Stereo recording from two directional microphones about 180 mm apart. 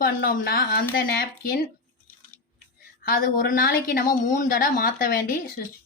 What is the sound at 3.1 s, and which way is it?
A woman's voice, 50° left (ahead or behind).